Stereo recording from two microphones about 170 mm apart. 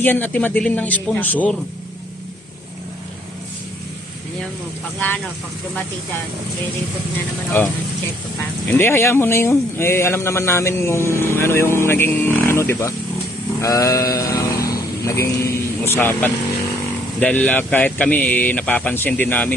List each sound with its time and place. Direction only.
0.0 s speech: 10° left (ahead or behind)
7.5 s speech: 10° left (ahead or behind)